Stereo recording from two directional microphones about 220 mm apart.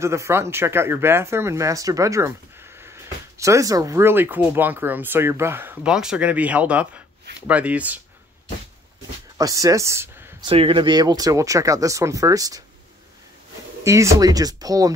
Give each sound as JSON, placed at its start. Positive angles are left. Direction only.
{"t": 0.0, "sound": "speech", "side_deg": -10}
{"t": 9.4, "sound": "speech", "side_deg": -15}
{"t": 10.5, "sound": "speech", "side_deg": -25}
{"t": 13.8, "sound": "speech", "side_deg": -15}